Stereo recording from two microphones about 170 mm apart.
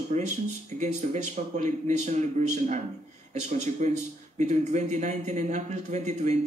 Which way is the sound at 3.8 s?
45° right (ahead or behind).